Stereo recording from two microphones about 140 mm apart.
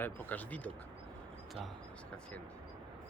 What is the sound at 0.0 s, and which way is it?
Speech, 10° left (ahead or behind).